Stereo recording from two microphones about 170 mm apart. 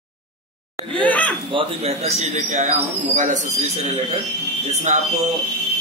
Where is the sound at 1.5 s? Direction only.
35° right (ahead or behind).